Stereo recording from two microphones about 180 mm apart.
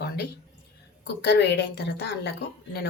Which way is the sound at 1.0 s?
70° left (ahead or behind).